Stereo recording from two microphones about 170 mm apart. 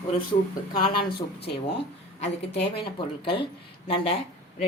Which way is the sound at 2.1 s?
40° left (ahead or behind).